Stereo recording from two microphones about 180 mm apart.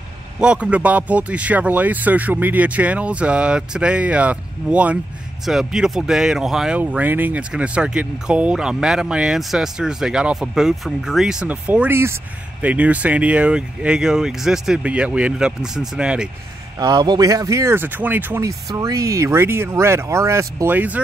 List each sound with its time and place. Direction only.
0.4 s speech: 5° right (ahead or behind)
16.8 s speech: 25° right (ahead or behind)